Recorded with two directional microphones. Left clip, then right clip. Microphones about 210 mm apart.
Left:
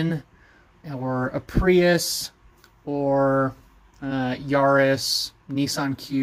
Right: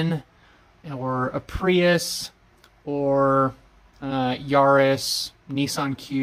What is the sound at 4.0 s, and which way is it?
Speech, 5° right (ahead or behind).